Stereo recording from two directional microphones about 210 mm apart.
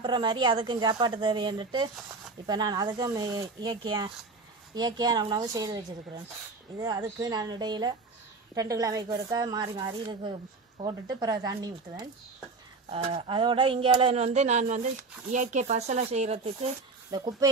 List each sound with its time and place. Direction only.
0.0 s speech: 20° right (ahead or behind)
17.1 s speech: 20° right (ahead or behind)